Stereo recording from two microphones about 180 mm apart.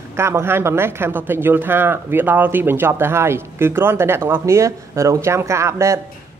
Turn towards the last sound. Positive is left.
turn(degrees=-15)  # may be behind; listen again after turning